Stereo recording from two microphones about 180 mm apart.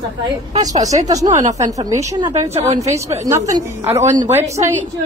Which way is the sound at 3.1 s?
15° right (ahead or behind).